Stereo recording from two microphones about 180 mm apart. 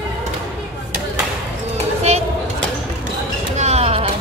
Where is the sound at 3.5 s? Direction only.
35° right (ahead or behind).